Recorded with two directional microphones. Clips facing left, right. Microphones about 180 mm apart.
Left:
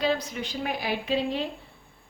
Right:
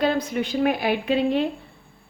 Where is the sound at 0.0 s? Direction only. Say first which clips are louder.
Right 5 dB; 55° right (ahead or behind).